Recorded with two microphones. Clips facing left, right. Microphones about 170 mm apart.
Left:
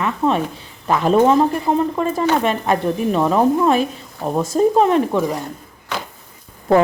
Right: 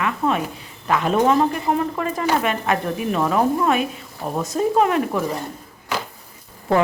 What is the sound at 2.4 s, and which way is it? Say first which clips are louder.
Speech: left 3 dB; 30° left (ahead or behind).